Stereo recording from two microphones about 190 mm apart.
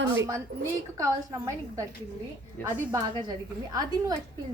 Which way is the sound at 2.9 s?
20° right (ahead or behind).